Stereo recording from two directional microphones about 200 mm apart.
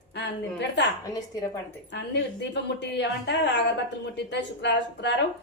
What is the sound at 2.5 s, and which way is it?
A woman's voice, 60° left (ahead or behind).